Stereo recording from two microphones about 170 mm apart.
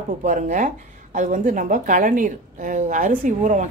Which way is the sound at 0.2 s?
50° right (ahead or behind).